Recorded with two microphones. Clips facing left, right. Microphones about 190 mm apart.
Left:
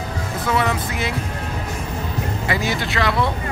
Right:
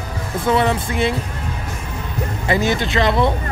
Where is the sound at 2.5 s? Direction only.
20° right (ahead or behind).